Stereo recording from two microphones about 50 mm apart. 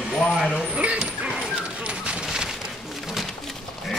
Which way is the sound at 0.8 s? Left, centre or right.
Right.